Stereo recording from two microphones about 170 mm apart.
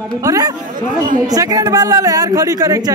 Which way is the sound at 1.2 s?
20° right (ahead or behind).